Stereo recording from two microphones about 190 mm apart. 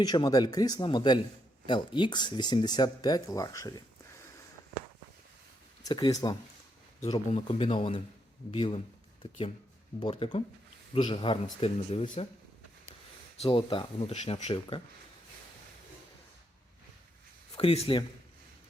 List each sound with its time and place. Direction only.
0.0 s speech: 20° left (ahead or behind)
5.8 s speech: 20° left (ahead or behind)
7.0 s speech: 35° left (ahead or behind)
10.0 s speech: 25° left (ahead or behind)
13.4 s speech: 25° left (ahead or behind)
17.5 s speech: 35° left (ahead or behind)